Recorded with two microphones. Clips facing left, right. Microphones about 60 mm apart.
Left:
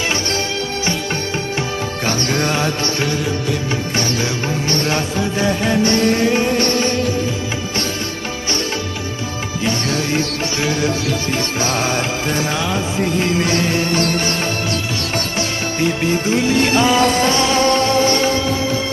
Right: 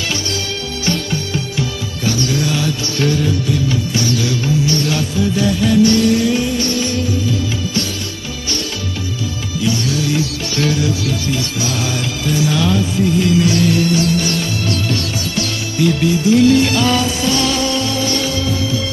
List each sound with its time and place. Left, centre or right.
1.6 s music: left
9.6 s music: left
12.5 s music: left
13.0 s music: left